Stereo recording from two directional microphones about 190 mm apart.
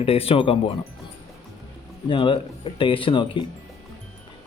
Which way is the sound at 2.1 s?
25° left (ahead or behind).